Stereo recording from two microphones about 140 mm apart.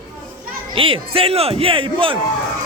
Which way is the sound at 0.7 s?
40° right (ahead or behind).